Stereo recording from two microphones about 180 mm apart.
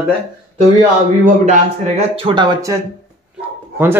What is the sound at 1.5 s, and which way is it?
Speech, 35° right (ahead or behind).